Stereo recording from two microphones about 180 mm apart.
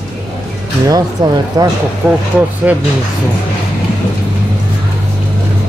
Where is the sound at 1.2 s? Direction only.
25° right (ahead or behind).